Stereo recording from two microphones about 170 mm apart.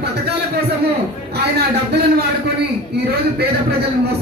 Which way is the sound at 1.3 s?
70° right (ahead or behind).